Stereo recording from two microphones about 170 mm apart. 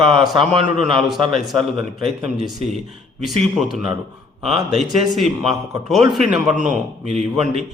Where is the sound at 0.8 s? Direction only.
Centre (ahead or behind).